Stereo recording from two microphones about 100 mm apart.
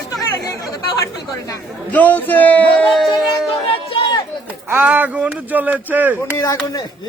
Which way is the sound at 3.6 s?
65° left (ahead or behind).